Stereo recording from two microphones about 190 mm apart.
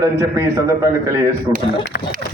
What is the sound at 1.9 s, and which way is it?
Speech, 55° left (ahead or behind).